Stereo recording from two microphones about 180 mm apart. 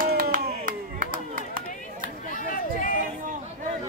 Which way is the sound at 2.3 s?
50° left (ahead or behind).